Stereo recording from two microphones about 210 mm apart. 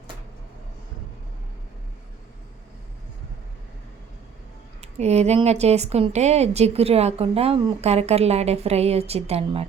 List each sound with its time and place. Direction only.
4.8 s a woman's voice: 30° right (ahead or behind)